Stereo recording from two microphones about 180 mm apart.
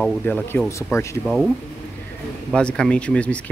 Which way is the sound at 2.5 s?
5° left (ahead or behind).